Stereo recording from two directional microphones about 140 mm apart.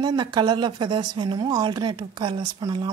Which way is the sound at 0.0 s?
30° right (ahead or behind).